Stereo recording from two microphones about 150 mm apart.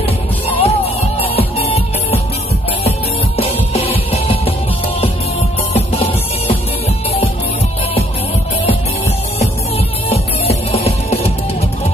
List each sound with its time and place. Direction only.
0.0 s music: 45° left (ahead or behind)
3.3 s music: 40° left (ahead or behind)
10.1 s music: 40° left (ahead or behind)